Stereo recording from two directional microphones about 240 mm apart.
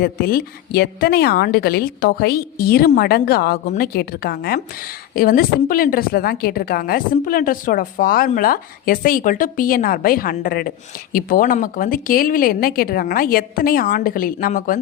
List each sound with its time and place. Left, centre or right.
0.0 s a woman's voice: left